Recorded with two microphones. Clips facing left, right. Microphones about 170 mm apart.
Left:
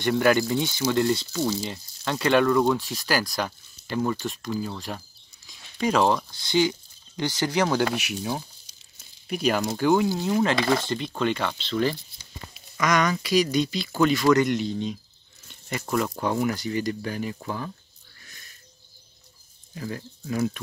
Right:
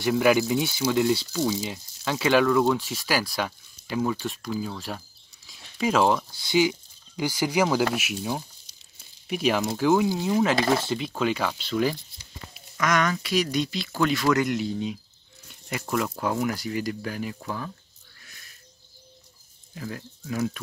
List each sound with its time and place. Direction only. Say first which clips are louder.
0.0 s speech: even; 5° right (ahead or behind)
18.2 s sniff: left 1 dB; centre (ahead or behind)
19.7 s speech: left 2 dB; centre (ahead or behind)